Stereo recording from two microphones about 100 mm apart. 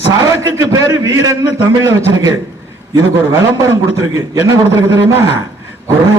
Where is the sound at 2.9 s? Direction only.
35° right (ahead or behind).